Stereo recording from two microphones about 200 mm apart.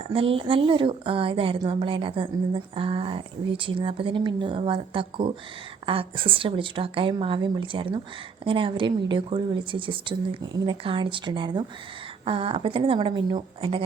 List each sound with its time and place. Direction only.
0.1 s a woman's voice: 30° right (ahead or behind)